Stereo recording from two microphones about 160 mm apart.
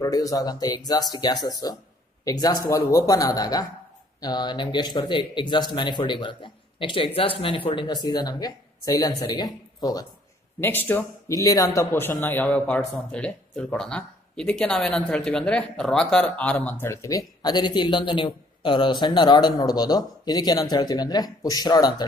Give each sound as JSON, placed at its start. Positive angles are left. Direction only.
{"t": 0.0, "sound": "speech", "side_deg": 20}
{"t": 10.6, "sound": "speech", "side_deg": 10}